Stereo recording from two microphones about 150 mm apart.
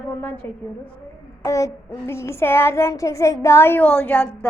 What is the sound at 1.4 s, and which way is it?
A child's voice, 20° left (ahead or behind).